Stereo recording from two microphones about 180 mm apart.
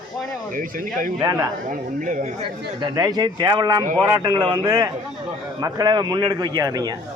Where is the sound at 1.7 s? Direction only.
45° right (ahead or behind).